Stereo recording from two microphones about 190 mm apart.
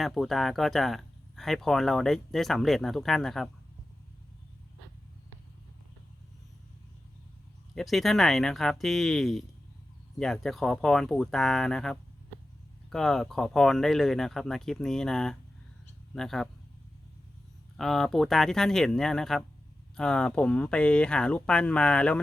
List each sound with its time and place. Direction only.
0.0 s speech: centre (ahead or behind)
7.8 s speech: centre (ahead or behind)
17.7 s speech: centre (ahead or behind)